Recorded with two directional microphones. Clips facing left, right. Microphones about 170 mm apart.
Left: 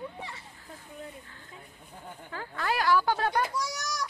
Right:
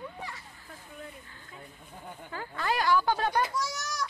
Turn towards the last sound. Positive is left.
turn(degrees=15)  # may be behind; listen again after turning